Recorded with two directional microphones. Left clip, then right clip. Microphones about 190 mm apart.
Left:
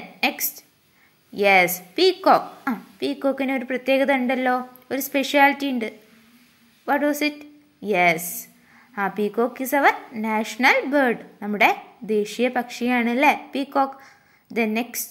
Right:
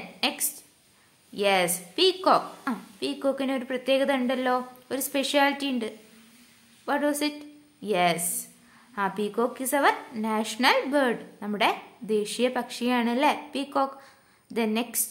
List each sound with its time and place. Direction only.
0.2 s a woman's voice: 15° left (ahead or behind)